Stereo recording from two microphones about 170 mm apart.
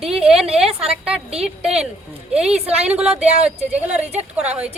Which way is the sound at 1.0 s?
5° right (ahead or behind).